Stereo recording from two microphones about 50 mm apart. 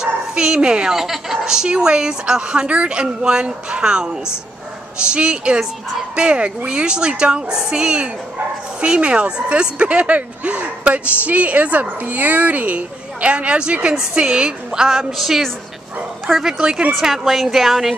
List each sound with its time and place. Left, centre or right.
0.0 s a woman's voice: centre
16.5 s a woman's voice: centre